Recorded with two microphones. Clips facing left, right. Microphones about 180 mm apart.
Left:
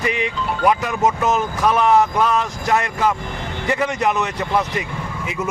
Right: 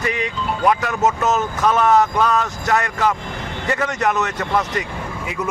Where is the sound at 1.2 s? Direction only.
15° left (ahead or behind).